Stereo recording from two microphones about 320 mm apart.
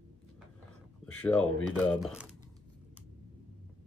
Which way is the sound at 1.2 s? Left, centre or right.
Centre.